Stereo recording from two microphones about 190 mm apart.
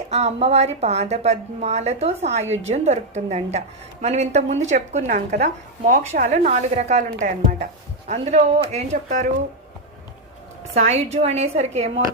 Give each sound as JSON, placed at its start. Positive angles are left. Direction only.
{"t": 0.1, "sound": "a woman's voice", "side_deg": -35}
{"t": 11.1, "sound": "a woman's voice", "side_deg": -35}